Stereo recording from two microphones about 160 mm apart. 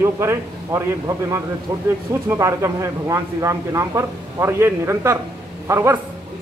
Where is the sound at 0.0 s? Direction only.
20° right (ahead or behind).